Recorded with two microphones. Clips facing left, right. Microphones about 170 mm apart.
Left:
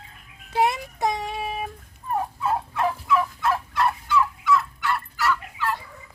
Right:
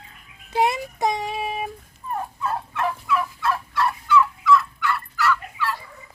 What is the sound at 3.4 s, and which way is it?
Fowl, 20° left (ahead or behind).